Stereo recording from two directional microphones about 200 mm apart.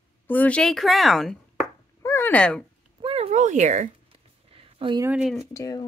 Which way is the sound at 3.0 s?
30° right (ahead or behind).